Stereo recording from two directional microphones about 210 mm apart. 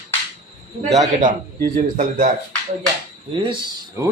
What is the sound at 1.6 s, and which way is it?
Speech, 45° right (ahead or behind).